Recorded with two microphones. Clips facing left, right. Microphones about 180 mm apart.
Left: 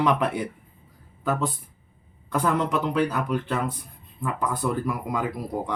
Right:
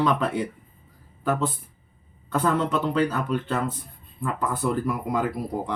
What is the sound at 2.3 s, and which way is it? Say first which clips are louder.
Speech: right 1 dB; 15° left (ahead or behind).